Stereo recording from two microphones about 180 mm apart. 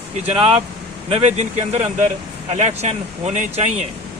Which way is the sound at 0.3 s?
35° right (ahead or behind).